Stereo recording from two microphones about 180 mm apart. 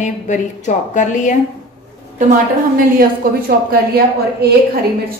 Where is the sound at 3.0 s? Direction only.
55° right (ahead or behind).